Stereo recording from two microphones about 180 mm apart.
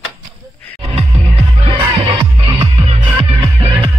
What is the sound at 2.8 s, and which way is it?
Music, 30° right (ahead or behind).